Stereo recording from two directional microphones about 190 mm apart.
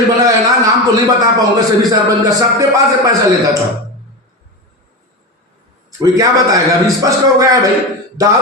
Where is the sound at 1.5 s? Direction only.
20° right (ahead or behind).